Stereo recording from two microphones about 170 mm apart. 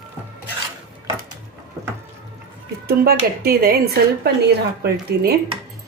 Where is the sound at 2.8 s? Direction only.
65° right (ahead or behind).